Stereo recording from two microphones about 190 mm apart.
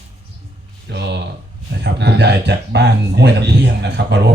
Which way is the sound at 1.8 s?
60° right (ahead or behind).